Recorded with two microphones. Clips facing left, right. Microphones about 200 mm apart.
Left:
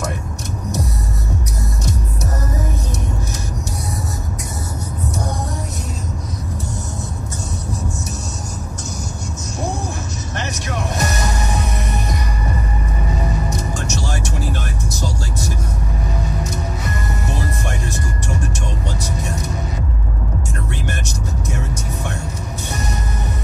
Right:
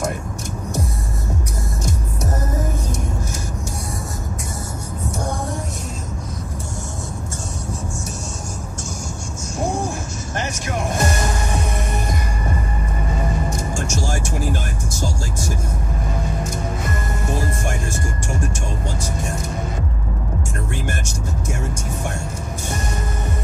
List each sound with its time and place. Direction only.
11.0 s music: 30° right (ahead or behind)
13.5 s music: 50° right (ahead or behind)